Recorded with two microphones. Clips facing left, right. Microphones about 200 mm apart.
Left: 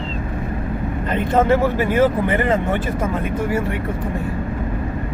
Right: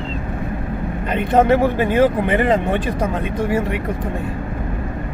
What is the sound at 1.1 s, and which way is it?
Speech, 15° right (ahead or behind).